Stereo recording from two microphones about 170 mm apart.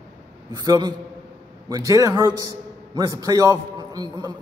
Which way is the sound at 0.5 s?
25° right (ahead or behind).